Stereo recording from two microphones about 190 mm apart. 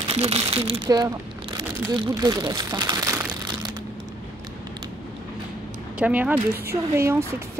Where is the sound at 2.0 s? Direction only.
20° right (ahead or behind).